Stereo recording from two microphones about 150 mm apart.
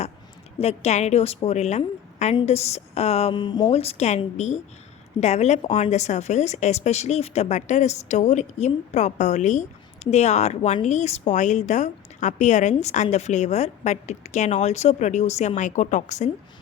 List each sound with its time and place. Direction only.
0.6 s speech: 45° left (ahead or behind); by 3.7 s 30° left (ahead or behind)
3.7 s speech: 40° left (ahead or behind)